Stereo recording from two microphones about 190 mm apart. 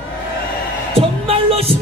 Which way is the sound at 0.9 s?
30° right (ahead or behind).